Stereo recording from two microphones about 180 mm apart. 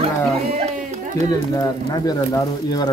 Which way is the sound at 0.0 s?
40° right (ahead or behind).